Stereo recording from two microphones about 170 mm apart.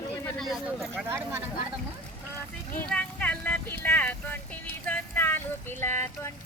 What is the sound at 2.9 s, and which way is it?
Vehicle, 5° left (ahead or behind).